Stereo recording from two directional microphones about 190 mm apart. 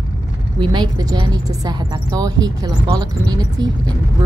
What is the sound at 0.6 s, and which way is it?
A woman's voice, 20° right (ahead or behind).